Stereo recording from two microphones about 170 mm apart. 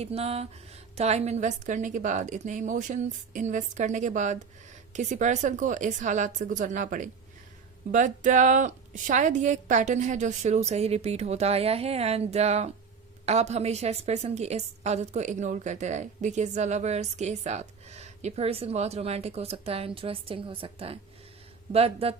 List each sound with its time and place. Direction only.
0.0 s a woman's voice: 35° right (ahead or behind)